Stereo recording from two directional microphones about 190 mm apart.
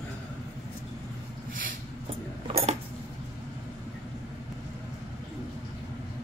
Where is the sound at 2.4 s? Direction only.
30° right (ahead or behind).